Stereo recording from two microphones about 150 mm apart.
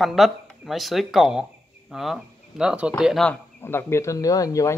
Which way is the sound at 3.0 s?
Centre (ahead or behind).